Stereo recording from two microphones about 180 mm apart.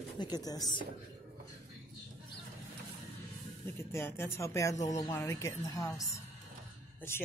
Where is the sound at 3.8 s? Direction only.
15° left (ahead or behind).